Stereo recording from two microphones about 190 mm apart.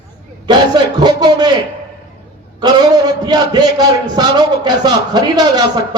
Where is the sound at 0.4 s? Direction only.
20° right (ahead or behind).